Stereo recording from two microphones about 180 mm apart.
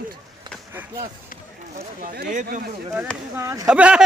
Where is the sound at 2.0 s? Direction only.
60° right (ahead or behind).